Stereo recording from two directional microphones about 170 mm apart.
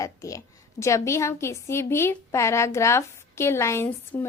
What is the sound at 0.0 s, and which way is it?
A woman's voice, 20° left (ahead or behind).